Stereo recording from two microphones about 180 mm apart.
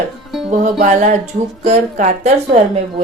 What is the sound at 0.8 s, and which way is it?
A woman's voice, 40° right (ahead or behind).